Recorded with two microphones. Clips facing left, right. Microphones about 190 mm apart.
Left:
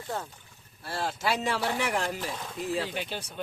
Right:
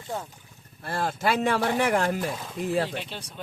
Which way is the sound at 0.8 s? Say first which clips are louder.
Right 4 dB; 55° right (ahead or behind).